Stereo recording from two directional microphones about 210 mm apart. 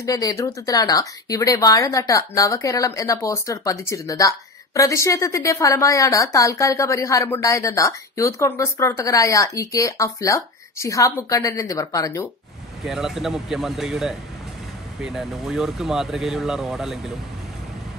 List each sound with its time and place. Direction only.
0.0 s a woman's voice: 15° left (ahead or behind)
12.8 s speech: centre (ahead or behind)